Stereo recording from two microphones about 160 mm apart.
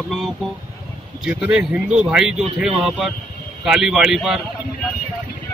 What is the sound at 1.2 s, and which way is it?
Speech, 5° right (ahead or behind).